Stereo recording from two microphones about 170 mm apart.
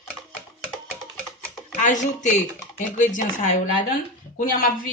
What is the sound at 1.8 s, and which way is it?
Speech, 45° left (ahead or behind).